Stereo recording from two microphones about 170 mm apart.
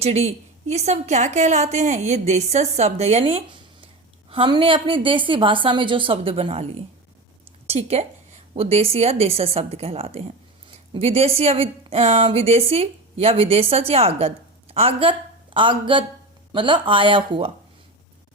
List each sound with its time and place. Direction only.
0.0 s a woman's voice: 40° right (ahead or behind)